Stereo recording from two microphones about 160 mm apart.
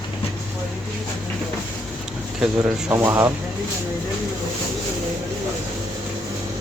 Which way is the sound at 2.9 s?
15° right (ahead or behind).